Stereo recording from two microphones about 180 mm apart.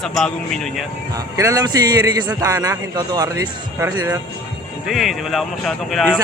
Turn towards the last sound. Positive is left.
turn(degrees=5)  # may be behind; listen again after turning